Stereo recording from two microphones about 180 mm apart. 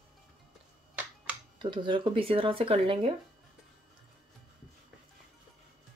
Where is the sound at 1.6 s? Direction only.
25° right (ahead or behind).